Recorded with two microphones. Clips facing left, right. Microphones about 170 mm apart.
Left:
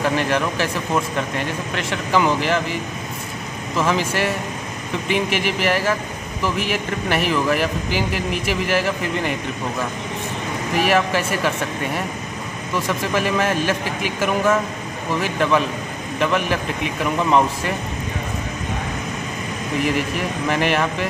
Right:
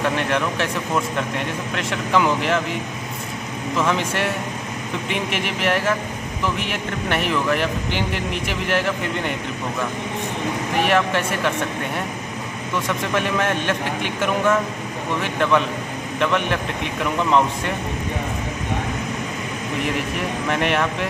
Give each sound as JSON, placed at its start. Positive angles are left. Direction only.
{"t": 0.0, "sound": "a man's voice", "side_deg": 0}
{"t": 10.8, "sound": "a man's voice", "side_deg": 5}
{"t": 19.8, "sound": "a man's voice", "side_deg": 0}